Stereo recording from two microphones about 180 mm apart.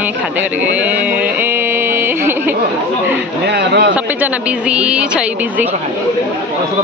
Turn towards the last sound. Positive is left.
turn(degrees=-5)  # may be behind; listen again after turning